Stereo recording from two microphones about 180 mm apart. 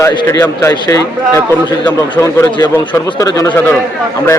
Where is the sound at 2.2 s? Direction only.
15° left (ahead or behind).